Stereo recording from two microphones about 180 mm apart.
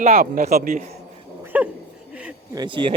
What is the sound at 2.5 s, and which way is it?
Speech, 25° right (ahead or behind).